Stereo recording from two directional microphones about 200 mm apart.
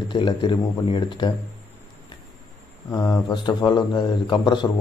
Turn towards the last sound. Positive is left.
turn(degrees=20)  # may be behind; listen again after turning